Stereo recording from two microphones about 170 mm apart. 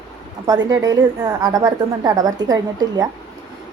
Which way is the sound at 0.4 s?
20° right (ahead or behind).